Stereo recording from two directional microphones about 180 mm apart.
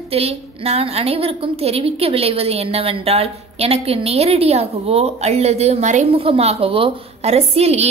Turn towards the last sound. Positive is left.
turn(degrees=-35)  # may be behind; listen again after turning